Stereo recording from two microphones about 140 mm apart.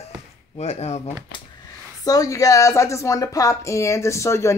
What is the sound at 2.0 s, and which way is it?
Speech, 25° left (ahead or behind).